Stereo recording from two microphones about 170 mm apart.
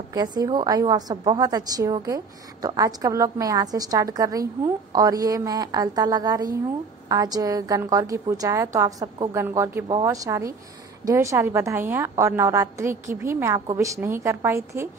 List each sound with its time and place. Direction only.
0.1 s a woman's voice: 25° right (ahead or behind)